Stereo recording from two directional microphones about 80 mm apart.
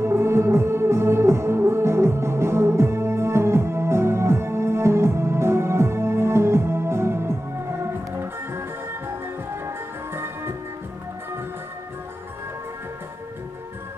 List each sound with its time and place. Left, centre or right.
0.0 s music: right
9.7 s music: right